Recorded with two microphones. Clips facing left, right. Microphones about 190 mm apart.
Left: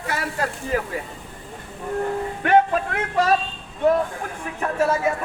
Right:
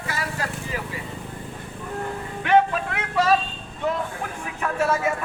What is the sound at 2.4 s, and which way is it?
Music, 45° left (ahead or behind).